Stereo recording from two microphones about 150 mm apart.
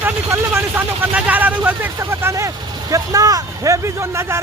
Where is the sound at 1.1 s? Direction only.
10° right (ahead or behind).